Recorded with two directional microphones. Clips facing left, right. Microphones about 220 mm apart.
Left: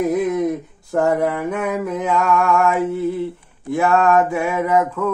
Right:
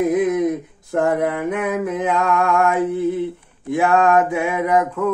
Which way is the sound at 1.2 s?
20° right (ahead or behind).